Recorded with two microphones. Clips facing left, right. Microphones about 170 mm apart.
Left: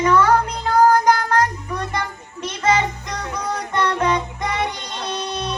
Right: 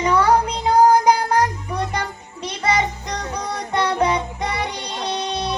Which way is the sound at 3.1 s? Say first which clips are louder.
Right 1 dB; 35° right (ahead or behind).